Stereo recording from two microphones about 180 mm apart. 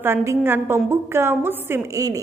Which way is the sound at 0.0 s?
15° right (ahead or behind).